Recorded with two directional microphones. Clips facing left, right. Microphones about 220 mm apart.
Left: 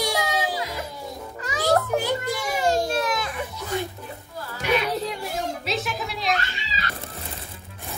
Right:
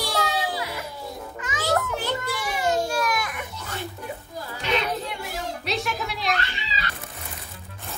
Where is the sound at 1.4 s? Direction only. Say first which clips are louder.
Left 3 dB; 35° left (ahead or behind).